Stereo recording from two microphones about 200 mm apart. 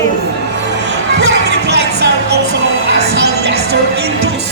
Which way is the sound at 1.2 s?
60° right (ahead or behind).